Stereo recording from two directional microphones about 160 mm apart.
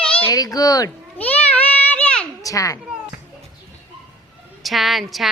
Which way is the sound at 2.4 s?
20° left (ahead or behind).